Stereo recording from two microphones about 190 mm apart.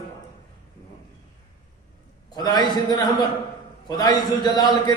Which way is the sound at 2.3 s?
20° left (ahead or behind).